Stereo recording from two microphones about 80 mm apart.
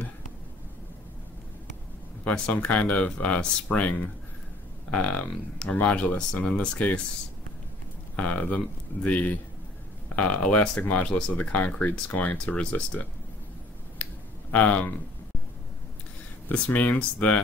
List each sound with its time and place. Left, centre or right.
2.2 s speech: centre
8.2 s speech: centre
14.5 s speech: centre
16.4 s speech: centre